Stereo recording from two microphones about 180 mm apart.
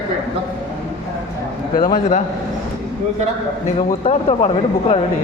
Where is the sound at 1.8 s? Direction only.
45° left (ahead or behind).